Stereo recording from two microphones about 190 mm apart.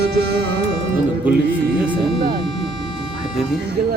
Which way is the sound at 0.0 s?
60° right (ahead or behind).